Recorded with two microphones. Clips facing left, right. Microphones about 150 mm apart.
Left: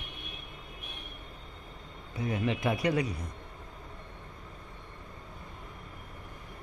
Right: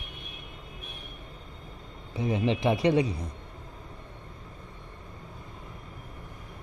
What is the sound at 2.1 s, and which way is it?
A man's voice, 25° right (ahead or behind).